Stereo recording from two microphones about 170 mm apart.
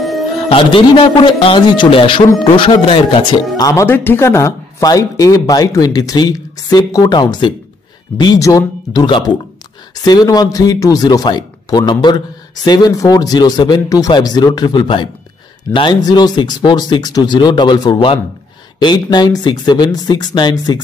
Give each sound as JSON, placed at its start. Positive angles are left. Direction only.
{"t": 0.5, "sound": "a man's voice", "side_deg": 30}
{"t": 3.5, "sound": "speech", "side_deg": 20}